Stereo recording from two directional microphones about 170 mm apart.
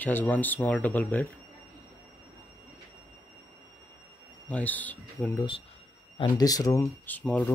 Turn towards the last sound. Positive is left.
turn(degrees=10)  # may be behind; listen again after turning